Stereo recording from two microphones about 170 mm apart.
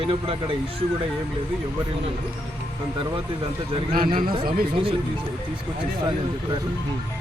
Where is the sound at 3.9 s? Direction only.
60° right (ahead or behind).